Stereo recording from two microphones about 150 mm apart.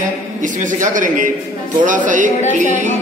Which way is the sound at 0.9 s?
60° right (ahead or behind).